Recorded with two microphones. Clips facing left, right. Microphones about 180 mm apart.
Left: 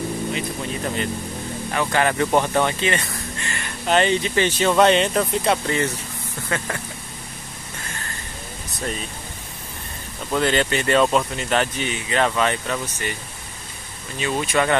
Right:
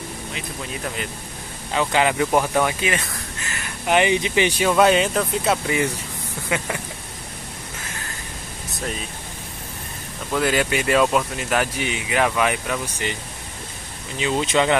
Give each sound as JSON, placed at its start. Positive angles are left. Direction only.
{"t": 1.7, "sound": "speech", "side_deg": -15}
{"t": 10.3, "sound": "speech", "side_deg": -10}
{"t": 14.1, "sound": "speech", "side_deg": -20}